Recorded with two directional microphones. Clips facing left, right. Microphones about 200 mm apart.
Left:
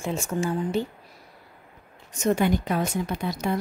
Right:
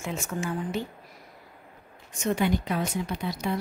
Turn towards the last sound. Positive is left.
turn(degrees=50)  # may be behind; listen again after turning